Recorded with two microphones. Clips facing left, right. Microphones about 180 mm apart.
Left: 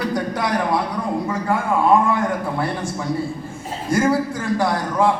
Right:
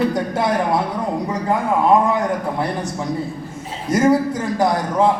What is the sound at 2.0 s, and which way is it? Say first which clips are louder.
A man's voice: right 1 dB; 20° right (ahead or behind).